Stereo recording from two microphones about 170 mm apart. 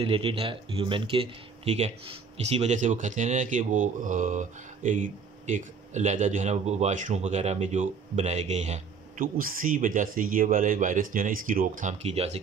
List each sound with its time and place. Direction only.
0.0 s speech: 35° right (ahead or behind)
9.4 s speech: 55° right (ahead or behind); by 12.4 s 40° right (ahead or behind)